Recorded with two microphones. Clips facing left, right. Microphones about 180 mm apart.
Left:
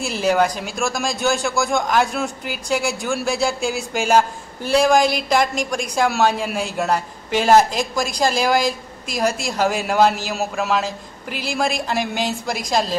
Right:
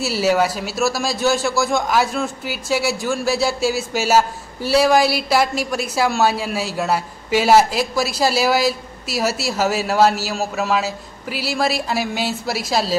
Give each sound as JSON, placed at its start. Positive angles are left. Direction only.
{"t": 0.0, "sound": "a man's voice", "side_deg": -5}